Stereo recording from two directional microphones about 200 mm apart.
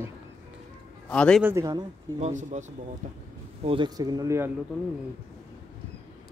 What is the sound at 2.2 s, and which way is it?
Speech, 35° right (ahead or behind).